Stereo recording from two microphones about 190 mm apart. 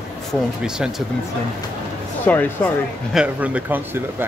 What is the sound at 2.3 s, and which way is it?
Speech, 10° left (ahead or behind).